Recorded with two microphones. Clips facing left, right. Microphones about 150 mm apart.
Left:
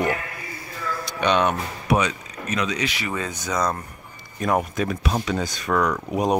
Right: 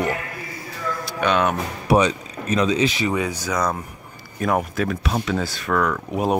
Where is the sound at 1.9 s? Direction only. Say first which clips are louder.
Right 4 dB; 30° right (ahead or behind).